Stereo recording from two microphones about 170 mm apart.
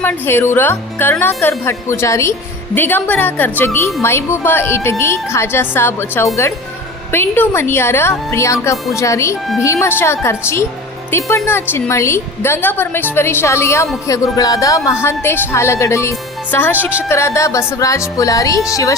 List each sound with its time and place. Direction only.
0.0 s speech: 15° left (ahead or behind)